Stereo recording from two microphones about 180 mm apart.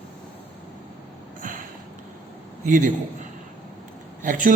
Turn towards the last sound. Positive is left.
turn(degrees=-45)  # may be behind; listen again after turning